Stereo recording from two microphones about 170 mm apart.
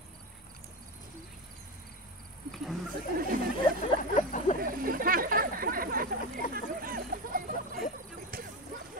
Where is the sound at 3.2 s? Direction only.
55° right (ahead or behind).